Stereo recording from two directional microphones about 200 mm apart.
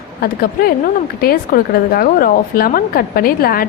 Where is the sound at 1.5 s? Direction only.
40° left (ahead or behind).